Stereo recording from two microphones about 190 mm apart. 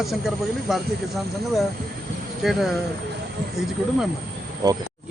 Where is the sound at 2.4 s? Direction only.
Centre (ahead or behind).